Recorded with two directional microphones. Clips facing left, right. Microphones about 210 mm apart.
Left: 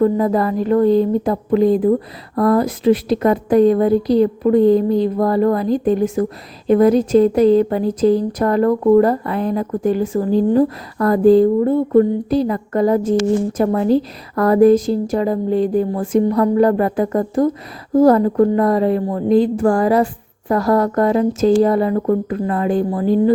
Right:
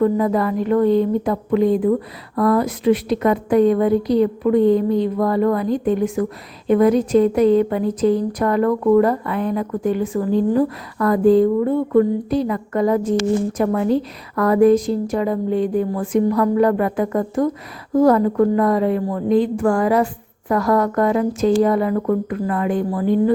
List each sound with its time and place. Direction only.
0.0 s speech: 35° left (ahead or behind)